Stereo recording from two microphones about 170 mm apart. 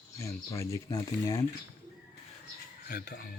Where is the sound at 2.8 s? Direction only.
60° left (ahead or behind).